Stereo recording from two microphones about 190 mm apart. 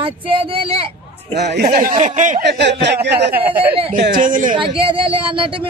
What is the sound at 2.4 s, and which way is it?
Speech, 65° right (ahead or behind).